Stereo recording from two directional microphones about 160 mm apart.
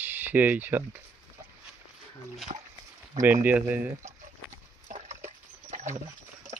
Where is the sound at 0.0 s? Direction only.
10° right (ahead or behind).